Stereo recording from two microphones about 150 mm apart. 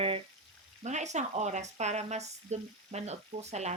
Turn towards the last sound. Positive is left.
turn(degrees=-50)  # may be behind; listen again after turning